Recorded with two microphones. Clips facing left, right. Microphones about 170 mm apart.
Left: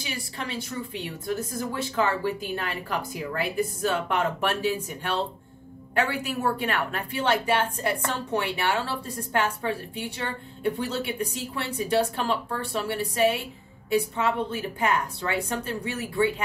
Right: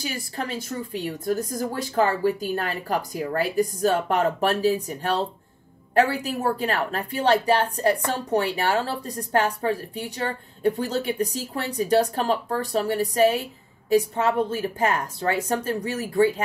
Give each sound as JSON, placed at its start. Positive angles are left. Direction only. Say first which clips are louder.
{"t": 0.0, "sound": "a woman's voice", "louder": "right 4 dB", "side_deg": -40}